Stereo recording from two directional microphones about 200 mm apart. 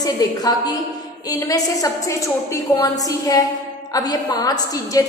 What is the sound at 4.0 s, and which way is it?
Speech, 20° left (ahead or behind).